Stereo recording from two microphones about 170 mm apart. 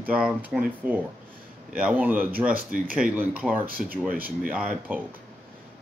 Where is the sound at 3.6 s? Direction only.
60° right (ahead or behind).